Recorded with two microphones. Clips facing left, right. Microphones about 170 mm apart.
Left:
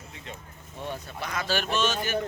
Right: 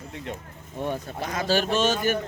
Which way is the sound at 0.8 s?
45° right (ahead or behind).